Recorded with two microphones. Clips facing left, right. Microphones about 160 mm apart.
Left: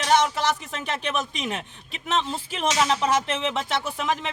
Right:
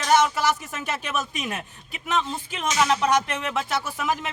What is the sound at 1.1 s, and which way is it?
Speech, 20° left (ahead or behind).